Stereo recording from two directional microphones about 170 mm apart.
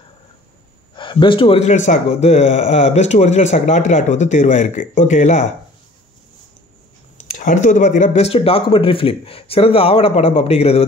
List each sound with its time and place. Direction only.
0.9 s speech: 30° left (ahead or behind); by 5.4 s 45° left (ahead or behind)
7.3 s speech: 50° left (ahead or behind)